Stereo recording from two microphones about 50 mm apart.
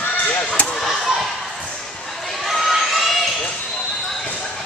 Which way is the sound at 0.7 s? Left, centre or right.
Centre.